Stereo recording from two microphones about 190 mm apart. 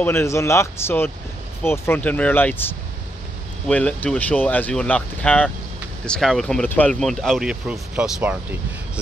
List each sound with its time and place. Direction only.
0.0 s speech: 15° left (ahead or behind); by 8.5 s 10° right (ahead or behind)